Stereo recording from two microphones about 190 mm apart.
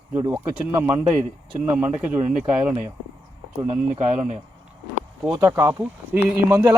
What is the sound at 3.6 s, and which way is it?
Speech, 35° right (ahead or behind).